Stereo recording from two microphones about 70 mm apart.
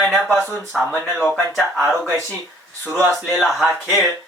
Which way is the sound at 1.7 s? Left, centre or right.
Centre.